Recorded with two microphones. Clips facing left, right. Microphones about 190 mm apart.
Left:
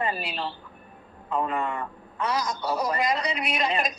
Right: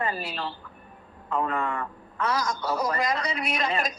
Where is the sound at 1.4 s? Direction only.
15° left (ahead or behind).